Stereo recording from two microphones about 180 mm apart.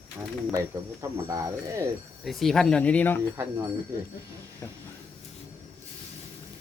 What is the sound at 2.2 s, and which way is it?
Speech, centre (ahead or behind).